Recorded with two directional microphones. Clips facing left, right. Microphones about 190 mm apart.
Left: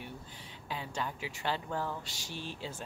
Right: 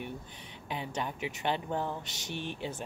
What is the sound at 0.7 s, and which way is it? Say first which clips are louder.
Speech: right 2 dB; 20° right (ahead or behind).